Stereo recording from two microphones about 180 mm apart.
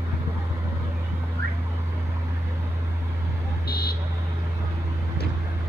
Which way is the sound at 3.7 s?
60° left (ahead or behind).